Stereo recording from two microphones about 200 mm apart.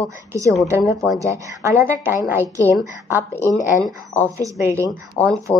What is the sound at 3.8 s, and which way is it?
Speech, 10° left (ahead or behind).